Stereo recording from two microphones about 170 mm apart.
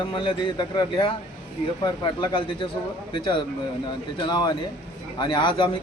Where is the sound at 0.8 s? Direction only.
25° left (ahead or behind).